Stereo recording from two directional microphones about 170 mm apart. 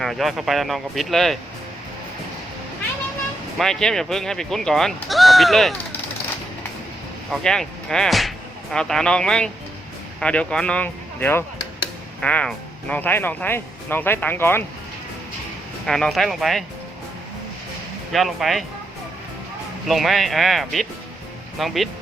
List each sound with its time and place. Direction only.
0.0 s speech: centre (ahead or behind)
3.6 s speech: 5° left (ahead or behind)
7.3 s speech: 5° left (ahead or behind)
15.9 s speech: 5° left (ahead or behind)
18.1 s speech: centre (ahead or behind)
19.9 s speech: centre (ahead or behind)